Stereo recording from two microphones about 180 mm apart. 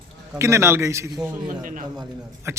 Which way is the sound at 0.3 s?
15° right (ahead or behind).